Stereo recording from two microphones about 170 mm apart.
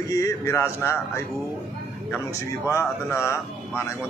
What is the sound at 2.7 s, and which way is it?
Speech, 15° left (ahead or behind).